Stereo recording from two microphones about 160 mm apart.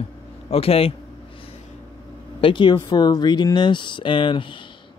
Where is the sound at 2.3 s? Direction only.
30° left (ahead or behind).